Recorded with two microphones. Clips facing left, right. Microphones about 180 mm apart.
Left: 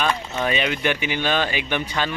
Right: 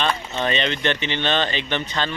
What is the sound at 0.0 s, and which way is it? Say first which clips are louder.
A man's voice: even; 5° left (ahead or behind).